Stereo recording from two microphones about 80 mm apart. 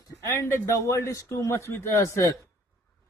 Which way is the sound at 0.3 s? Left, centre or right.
Left.